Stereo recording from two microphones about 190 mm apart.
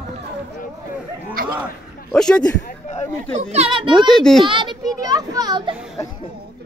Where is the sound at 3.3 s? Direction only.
35° right (ahead or behind).